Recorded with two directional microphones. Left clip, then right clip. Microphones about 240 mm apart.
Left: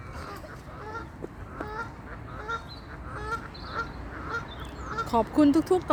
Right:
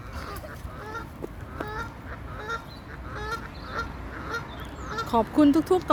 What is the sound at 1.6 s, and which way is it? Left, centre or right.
Goose, right.